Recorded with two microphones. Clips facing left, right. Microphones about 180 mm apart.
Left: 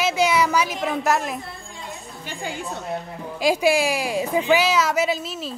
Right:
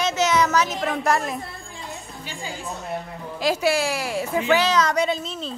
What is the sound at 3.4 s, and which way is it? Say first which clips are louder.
A woman's voice: left 2 dB; 15° left (ahead or behind).